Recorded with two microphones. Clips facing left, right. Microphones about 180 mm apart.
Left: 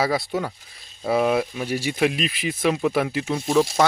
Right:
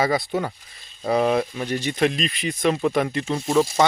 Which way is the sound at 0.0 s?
Centre (ahead or behind).